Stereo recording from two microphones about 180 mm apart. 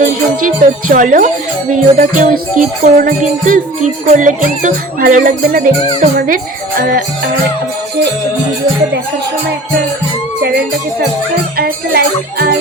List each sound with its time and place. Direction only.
0.0 s music: 45° right (ahead or behind)
11.5 s music: 60° right (ahead or behind)